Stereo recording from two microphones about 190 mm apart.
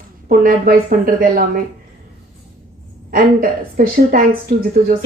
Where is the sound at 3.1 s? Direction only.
50° right (ahead or behind).